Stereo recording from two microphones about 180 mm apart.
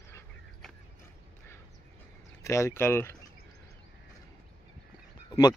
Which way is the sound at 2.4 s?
15° left (ahead or behind).